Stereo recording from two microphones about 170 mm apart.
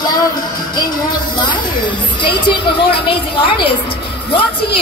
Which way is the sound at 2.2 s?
30° left (ahead or behind).